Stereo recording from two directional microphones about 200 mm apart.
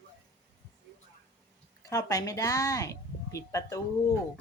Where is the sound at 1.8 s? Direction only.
15° left (ahead or behind).